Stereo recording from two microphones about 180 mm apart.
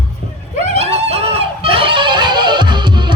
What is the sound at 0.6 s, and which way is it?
Music, 35° right (ahead or behind).